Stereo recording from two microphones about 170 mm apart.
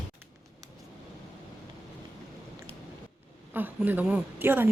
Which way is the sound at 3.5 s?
10° right (ahead or behind).